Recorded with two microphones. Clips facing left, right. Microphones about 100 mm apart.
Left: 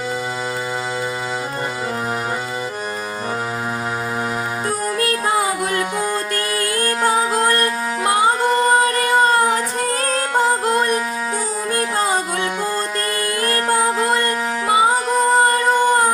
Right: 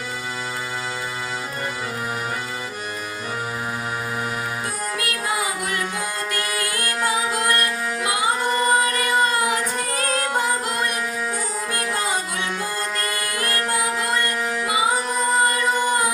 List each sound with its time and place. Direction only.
4.9 s music: 40° left (ahead or behind)
13.4 s music: 40° left (ahead or behind)